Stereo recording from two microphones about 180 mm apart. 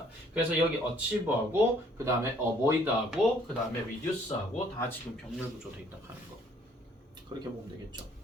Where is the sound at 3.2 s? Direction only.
5° right (ahead or behind).